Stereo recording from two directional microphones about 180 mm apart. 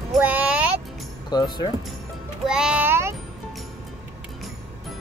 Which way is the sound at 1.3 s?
20° left (ahead or behind).